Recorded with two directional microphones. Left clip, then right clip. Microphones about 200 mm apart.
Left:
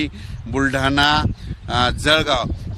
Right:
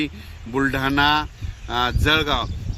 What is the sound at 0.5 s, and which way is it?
Speech, 50° left (ahead or behind).